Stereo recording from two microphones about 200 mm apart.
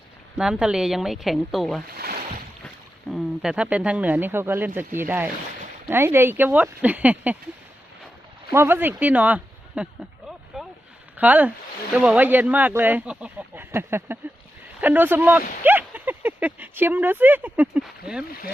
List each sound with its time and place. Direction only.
0.3 s speech: 5° right (ahead or behind)
3.1 s speech: centre (ahead or behind)
8.4 s a sound: 10° right (ahead or behind)
11.2 s speech: 5° right (ahead or behind)